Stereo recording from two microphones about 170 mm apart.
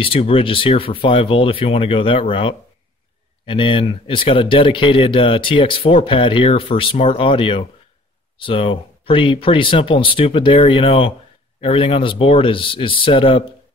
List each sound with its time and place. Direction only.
0.0 s speech: 35° left (ahead or behind)